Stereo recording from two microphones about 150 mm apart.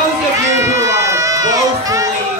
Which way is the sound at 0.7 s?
20° right (ahead or behind).